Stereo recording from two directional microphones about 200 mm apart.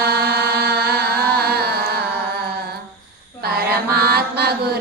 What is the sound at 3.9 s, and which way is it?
Chant, 50° right (ahead or behind).